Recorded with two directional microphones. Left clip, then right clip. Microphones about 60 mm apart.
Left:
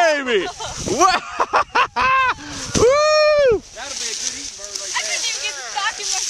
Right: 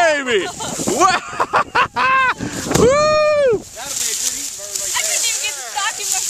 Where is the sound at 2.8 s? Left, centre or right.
Left.